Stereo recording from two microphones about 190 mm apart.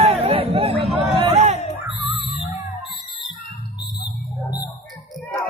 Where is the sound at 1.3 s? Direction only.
35° right (ahead or behind).